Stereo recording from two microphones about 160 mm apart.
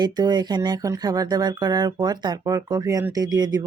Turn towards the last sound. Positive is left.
turn(degrees=-25)  # may be behind; listen again after turning